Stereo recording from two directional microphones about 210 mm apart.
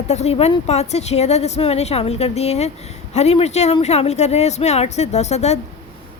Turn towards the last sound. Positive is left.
turn(degrees=30)  # may be behind; listen again after turning